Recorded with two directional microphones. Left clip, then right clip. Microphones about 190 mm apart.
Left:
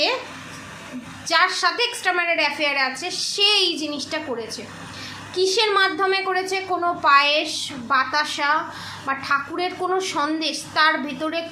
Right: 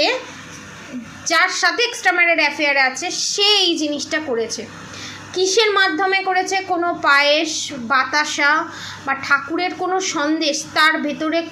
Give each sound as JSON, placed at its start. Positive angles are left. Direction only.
{"t": 1.2, "sound": "a woman's voice", "side_deg": -20}